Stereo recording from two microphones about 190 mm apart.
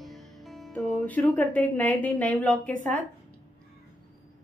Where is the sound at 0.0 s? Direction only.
Centre (ahead or behind).